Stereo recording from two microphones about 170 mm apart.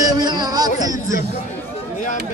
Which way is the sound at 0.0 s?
25° right (ahead or behind).